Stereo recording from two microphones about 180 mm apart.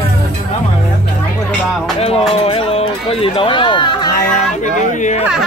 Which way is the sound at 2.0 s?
35° left (ahead or behind).